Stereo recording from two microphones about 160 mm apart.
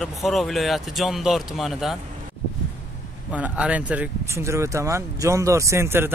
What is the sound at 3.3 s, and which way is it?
Speech, 10° right (ahead or behind).